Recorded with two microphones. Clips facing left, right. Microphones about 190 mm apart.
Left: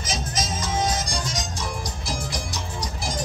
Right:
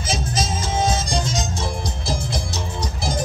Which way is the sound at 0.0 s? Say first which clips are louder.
Right 4 dB; 30° right (ahead or behind).